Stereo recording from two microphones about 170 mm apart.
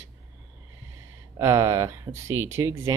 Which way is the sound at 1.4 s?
20° right (ahead or behind).